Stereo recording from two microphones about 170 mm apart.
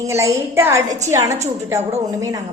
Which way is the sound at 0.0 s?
20° right (ahead or behind).